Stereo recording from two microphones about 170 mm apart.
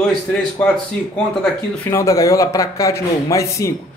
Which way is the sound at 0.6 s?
10° left (ahead or behind).